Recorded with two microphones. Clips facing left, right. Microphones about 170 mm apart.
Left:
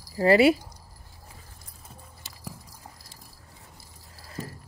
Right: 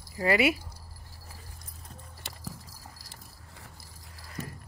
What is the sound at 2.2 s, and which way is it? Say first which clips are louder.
Music: right 4 dB; 60° right (ahead or behind).